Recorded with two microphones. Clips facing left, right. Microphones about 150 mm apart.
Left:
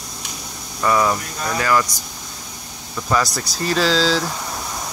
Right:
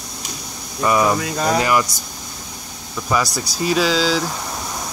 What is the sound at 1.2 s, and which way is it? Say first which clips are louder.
Speech: right 7 dB; 85° right.